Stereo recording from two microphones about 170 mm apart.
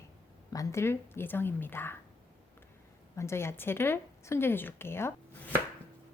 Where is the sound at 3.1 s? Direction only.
15° left (ahead or behind).